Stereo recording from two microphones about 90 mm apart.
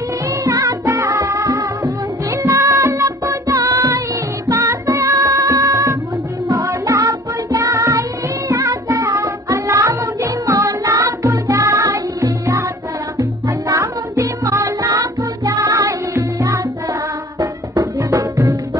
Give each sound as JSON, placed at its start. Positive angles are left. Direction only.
{"t": 0.3, "sound": "music", "side_deg": -45}